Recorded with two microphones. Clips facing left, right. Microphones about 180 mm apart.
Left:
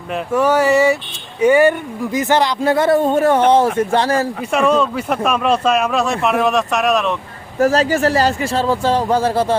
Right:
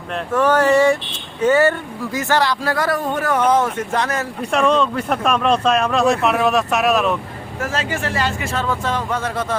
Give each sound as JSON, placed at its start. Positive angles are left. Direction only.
{"t": 0.1, "sound": "a sound", "side_deg": 10}
{"t": 2.1, "sound": "speech", "side_deg": 20}
{"t": 4.5, "sound": "speech", "side_deg": 5}
{"t": 7.6, "sound": "speech", "side_deg": 40}